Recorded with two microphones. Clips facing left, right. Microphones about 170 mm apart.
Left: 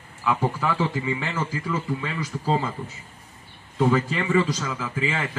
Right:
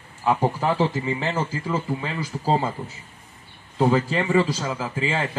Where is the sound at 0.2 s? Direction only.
35° right (ahead or behind).